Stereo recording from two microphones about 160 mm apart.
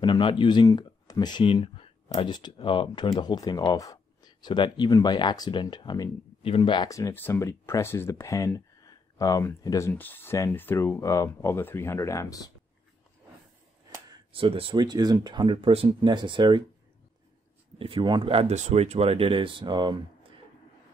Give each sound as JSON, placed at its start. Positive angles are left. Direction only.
{"t": 0.0, "sound": "speech", "side_deg": 30}
{"t": 14.1, "sound": "speech", "side_deg": -35}
{"t": 17.7, "sound": "speech", "side_deg": -35}